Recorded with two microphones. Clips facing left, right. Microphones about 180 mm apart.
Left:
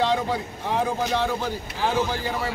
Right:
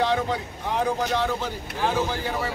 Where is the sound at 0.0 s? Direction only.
15° left (ahead or behind).